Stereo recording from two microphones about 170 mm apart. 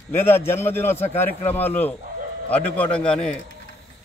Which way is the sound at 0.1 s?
15° left (ahead or behind).